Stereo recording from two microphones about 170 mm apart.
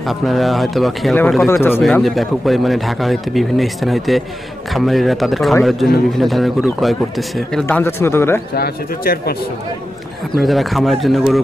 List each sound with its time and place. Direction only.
0.0 s speech: centre (ahead or behind)
1.5 s speech: 15° left (ahead or behind)
1.8 s speech: centre (ahead or behind)
7.6 s speech: 15° left (ahead or behind)
8.5 s speech: 65° left (ahead or behind)
10.3 s speech: centre (ahead or behind)